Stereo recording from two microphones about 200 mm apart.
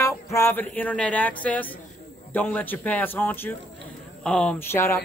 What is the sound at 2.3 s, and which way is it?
Speech, 10° left (ahead or behind).